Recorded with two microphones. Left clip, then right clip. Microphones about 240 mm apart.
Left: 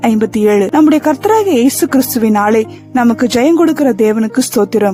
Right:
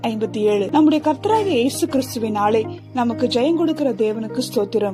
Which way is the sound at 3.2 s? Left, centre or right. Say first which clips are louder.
Left 4 dB; left.